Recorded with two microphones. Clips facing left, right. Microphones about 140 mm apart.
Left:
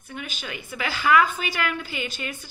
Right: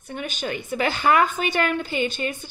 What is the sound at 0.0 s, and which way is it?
A woman's voice, 40° right (ahead or behind).